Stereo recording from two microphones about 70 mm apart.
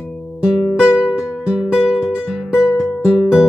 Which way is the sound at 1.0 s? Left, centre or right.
Centre.